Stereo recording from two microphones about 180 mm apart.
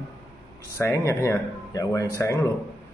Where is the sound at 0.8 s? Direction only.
15° left (ahead or behind).